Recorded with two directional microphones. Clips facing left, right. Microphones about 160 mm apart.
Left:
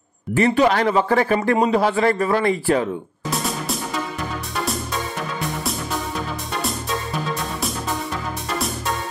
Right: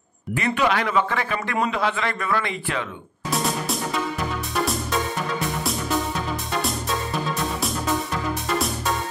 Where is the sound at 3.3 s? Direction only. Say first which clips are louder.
Right 1 dB; centre (ahead or behind).